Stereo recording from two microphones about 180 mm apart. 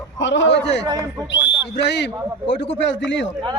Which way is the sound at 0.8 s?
20° right (ahead or behind).